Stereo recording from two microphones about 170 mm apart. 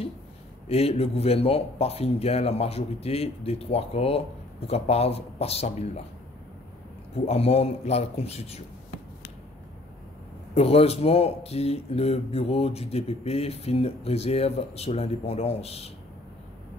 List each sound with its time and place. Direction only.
0.7 s speech: 35° left (ahead or behind)
7.2 s speech: 35° left (ahead or behind)
10.5 s speech: 35° left (ahead or behind)